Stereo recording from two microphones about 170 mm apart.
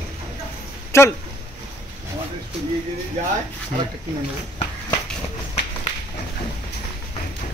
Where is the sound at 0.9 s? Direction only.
15° left (ahead or behind).